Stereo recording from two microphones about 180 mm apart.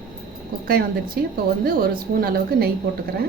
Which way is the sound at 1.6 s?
55° right (ahead or behind).